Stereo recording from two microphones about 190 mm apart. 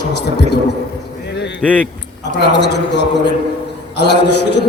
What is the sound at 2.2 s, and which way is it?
A man's voice, 65° left (ahead or behind).